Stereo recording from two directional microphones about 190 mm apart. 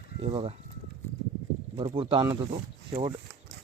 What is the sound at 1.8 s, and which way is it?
Speech, 25° right (ahead or behind).